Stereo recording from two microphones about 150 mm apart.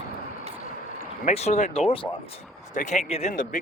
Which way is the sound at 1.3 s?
45° left (ahead or behind).